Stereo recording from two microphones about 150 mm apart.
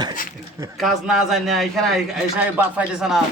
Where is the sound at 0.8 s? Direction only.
Centre (ahead or behind).